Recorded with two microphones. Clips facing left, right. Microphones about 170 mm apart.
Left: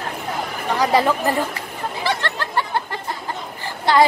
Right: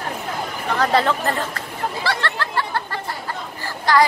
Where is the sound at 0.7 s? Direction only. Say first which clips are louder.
Left 1 dB; 10° left (ahead or behind).